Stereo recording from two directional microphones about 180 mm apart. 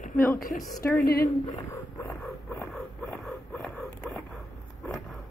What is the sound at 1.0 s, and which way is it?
Speech, 55° left (ahead or behind).